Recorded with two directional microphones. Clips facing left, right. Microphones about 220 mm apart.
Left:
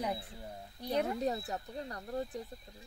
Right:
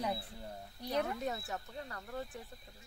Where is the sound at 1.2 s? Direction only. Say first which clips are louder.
Left 4 dB; 35° left (ahead or behind).